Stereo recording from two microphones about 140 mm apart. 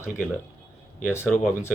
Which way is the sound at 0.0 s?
20° left (ahead or behind).